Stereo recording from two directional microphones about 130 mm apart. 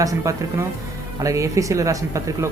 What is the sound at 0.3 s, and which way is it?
Speech, 25° right (ahead or behind).